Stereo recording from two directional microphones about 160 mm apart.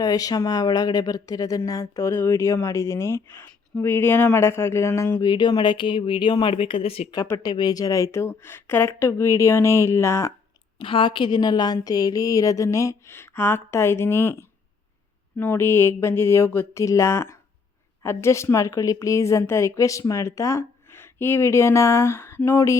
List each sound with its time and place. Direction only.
0.0 s speech: 20° left (ahead or behind)
5.2 s a woman's voice: 25° left (ahead or behind)
7.2 s speech: 25° left (ahead or behind)
10.8 s a woman's voice: 30° left (ahead or behind); by 22.8 s 15° left (ahead or behind)